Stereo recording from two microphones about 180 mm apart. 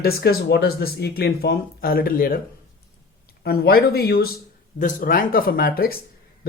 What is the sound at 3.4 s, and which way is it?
Speech, 60° left (ahead or behind).